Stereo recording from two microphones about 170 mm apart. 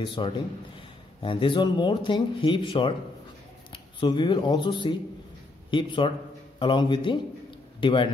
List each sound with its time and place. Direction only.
0.0 s speech: 30° left (ahead or behind)
4.0 s speech: 30° left (ahead or behind)